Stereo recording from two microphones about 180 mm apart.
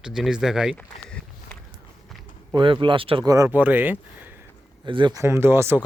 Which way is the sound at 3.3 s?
15° right (ahead or behind).